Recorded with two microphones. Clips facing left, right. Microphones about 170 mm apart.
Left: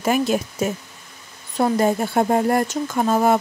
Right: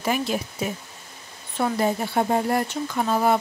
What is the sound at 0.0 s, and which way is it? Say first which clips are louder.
Speech: left 5 dB; 45° left (ahead or behind).